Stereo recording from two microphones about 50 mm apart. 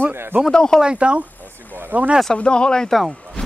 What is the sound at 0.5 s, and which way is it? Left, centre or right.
Speech, centre.